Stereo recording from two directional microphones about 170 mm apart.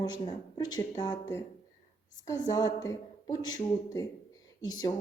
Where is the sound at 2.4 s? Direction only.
20° left (ahead or behind).